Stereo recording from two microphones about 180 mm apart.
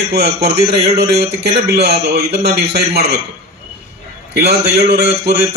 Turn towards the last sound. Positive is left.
turn(degrees=-65)  # may be behind; listen again after turning